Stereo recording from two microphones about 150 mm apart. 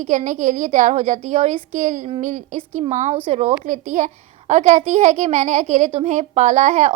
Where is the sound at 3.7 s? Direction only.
60° right (ahead or behind).